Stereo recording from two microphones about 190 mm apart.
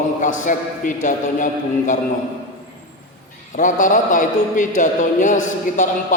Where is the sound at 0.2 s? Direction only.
40° left (ahead or behind).